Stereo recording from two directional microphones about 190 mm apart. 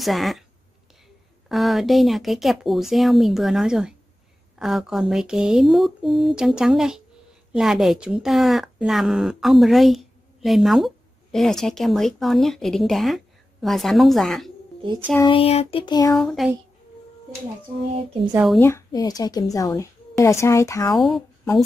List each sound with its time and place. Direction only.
0.0 s speech: centre (ahead or behind)
1.5 s speech: centre (ahead or behind)
15.1 s child singing: 25° left (ahead or behind)
16.2 s speech: centre (ahead or behind)
18.3 s speech: 5° right (ahead or behind)
18.6 s child singing: 15° left (ahead or behind)
19.5 s a woman's voice: 15° left (ahead or behind)
20.9 s speech: centre (ahead or behind)